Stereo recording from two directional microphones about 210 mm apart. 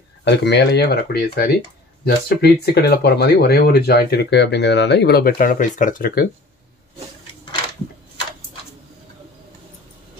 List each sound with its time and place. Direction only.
0.2 s speech: 55° left (ahead or behind)